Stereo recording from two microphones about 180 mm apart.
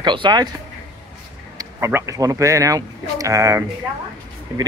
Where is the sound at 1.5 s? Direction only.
15° right (ahead or behind).